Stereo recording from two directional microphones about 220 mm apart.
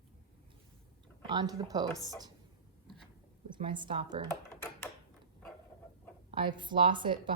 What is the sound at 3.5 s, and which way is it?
Speech, 20° right (ahead or behind).